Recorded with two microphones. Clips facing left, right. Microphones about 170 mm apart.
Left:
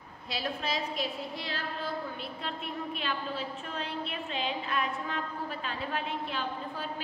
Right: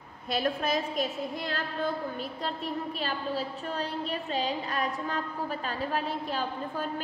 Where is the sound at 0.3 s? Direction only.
50° right (ahead or behind).